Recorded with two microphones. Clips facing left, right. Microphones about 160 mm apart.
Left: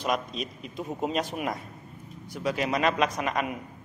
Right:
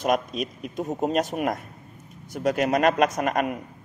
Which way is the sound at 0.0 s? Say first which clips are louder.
Right 5 dB; 50° right (ahead or behind).